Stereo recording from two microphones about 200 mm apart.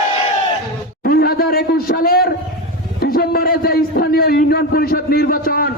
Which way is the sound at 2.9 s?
50° left (ahead or behind).